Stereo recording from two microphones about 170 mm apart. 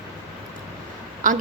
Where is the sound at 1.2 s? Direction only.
50° right (ahead or behind).